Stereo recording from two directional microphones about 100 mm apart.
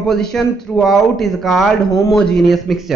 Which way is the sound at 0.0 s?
5° left (ahead or behind).